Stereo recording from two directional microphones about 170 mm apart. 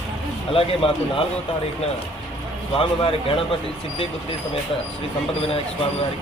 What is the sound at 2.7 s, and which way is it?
Speech, 35° left (ahead or behind).